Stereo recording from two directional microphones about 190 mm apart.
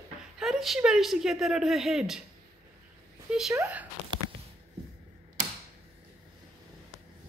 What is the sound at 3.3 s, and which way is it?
Speech, 5° right (ahead or behind).